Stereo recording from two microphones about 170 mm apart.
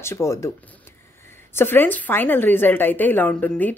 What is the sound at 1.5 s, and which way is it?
A woman's voice, 10° left (ahead or behind).